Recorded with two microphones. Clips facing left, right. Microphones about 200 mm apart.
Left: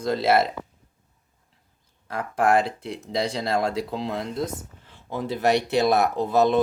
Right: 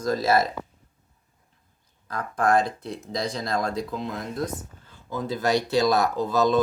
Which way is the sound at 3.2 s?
30° left (ahead or behind).